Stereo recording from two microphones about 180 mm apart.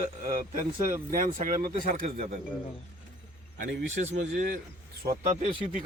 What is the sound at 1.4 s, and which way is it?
Speech, 45° right (ahead or behind).